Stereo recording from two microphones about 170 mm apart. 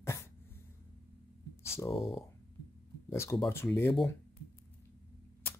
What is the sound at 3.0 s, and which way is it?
Speech, 15° left (ahead or behind).